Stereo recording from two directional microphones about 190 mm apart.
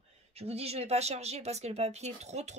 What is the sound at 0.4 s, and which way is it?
Speech, 30° right (ahead or behind).